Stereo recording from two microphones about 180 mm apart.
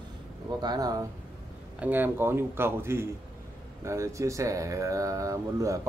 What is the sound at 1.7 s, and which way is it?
Speech, 10° right (ahead or behind).